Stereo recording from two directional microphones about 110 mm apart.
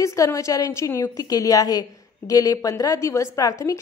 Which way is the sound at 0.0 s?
30° left (ahead or behind).